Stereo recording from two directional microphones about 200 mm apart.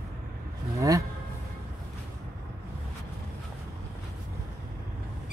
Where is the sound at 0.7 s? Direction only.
15° right (ahead or behind).